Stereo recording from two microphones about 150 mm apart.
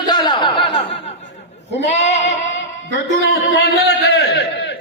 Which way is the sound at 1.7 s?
50° left (ahead or behind).